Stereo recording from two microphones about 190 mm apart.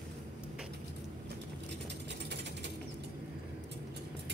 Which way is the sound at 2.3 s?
65° right (ahead or behind).